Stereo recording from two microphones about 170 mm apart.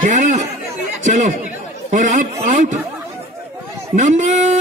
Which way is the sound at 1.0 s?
50° right (ahead or behind).